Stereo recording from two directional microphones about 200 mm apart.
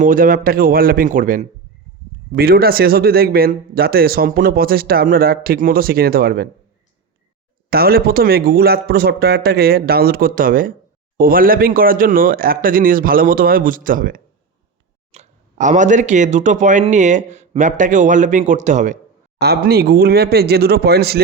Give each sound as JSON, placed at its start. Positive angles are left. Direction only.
{"t": 0.0, "sound": "a man's voice", "side_deg": -45}
{"t": 7.7, "sound": "a man's voice", "side_deg": -50}
{"t": 19.4, "sound": "a man's voice", "side_deg": -50}